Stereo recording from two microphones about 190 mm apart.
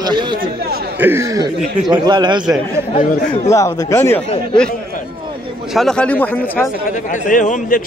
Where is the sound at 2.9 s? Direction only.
40° left (ahead or behind).